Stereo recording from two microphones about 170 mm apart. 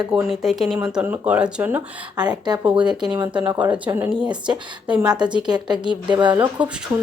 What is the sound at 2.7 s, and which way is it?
Speech, 25° right (ahead or behind).